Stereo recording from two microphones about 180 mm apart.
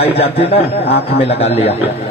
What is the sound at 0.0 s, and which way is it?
A man's voice, 35° left (ahead or behind).